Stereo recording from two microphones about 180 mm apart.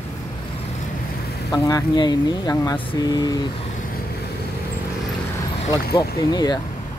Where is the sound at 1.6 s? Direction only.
20° left (ahead or behind).